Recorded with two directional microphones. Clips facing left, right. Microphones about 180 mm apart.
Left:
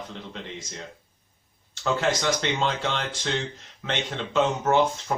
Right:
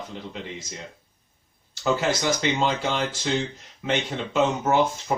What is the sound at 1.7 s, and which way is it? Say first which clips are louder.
Speech: right 1 dB; 10° right (ahead or behind).